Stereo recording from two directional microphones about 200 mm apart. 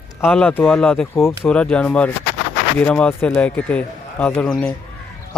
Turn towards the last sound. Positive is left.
turn(degrees=5)  # may be behind; listen again after turning